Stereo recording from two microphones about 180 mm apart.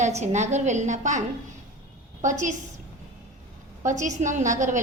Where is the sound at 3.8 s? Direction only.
45° right (ahead or behind).